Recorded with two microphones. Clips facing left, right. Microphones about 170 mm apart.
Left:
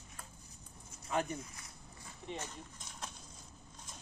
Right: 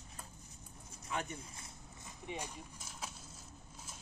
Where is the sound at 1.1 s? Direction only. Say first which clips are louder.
Left 5 dB; 35° left (ahead or behind).